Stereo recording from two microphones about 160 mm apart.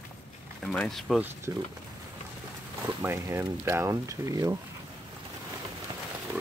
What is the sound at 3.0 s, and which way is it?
Speech, 20° right (ahead or behind).